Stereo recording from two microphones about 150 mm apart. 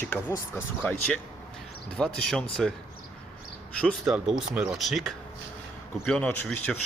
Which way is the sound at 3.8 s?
5° left (ahead or behind).